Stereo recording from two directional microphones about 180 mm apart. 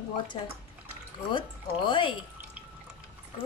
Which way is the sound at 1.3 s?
25° left (ahead or behind).